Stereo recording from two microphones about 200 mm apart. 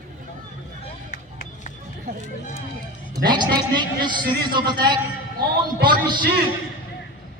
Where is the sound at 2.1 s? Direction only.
50° right (ahead or behind).